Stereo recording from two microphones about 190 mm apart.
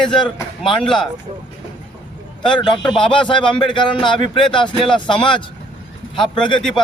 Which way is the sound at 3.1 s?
25° left (ahead or behind).